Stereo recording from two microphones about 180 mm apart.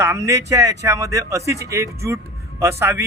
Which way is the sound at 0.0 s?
15° right (ahead or behind).